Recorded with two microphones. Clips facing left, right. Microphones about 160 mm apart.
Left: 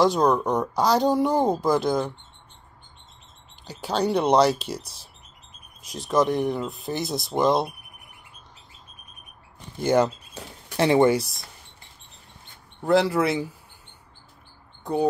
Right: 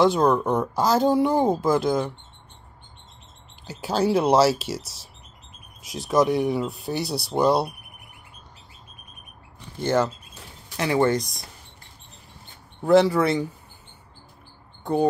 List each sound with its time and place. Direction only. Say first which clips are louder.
0.0 s speech: right 1 dB; 5° right (ahead or behind)
3.6 s speech: right 2 dB; centre (ahead or behind)
6.0 s speech: right 1 dB; 5° right (ahead or behind)
9.8 s speech: left 2 dB; 15° left (ahead or behind)
12.8 s speech: right 3 dB; centre (ahead or behind)
14.8 s a sound: right 2 dB; centre (ahead or behind)